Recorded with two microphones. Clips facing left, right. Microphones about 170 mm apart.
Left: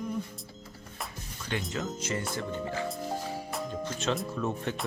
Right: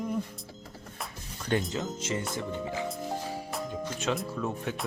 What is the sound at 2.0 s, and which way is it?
Speech, 20° right (ahead or behind).